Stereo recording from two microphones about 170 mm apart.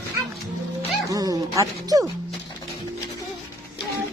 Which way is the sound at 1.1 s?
20° right (ahead or behind).